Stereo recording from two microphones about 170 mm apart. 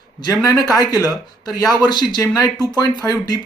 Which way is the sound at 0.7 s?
20° left (ahead or behind).